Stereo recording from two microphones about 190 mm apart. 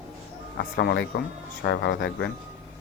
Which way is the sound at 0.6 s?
60° left (ahead or behind).